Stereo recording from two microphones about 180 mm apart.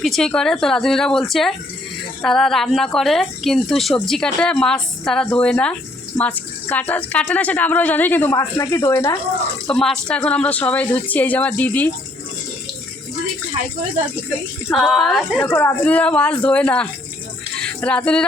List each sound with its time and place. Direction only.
0.0 s speech: centre (ahead or behind); by 9.1 s 15° left (ahead or behind)
9.6 s speech: 5° left (ahead or behind)
14.7 s speech: centre (ahead or behind)
17.6 s music: 5° left (ahead or behind)